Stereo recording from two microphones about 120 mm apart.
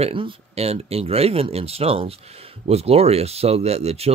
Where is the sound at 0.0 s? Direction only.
45° right (ahead or behind).